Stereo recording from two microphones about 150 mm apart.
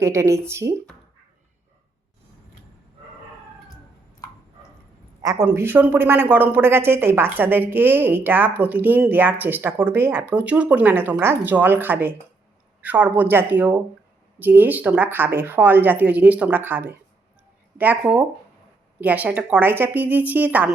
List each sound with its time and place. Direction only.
0.0 s speech: 20° right (ahead or behind)
5.2 s speech: 20° right (ahead or behind)